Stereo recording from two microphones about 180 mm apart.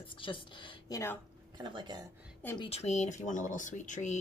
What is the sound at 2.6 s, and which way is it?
Speech, 35° left (ahead or behind).